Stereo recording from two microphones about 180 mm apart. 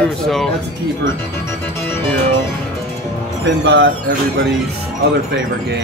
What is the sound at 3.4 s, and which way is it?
Speech, 90° right.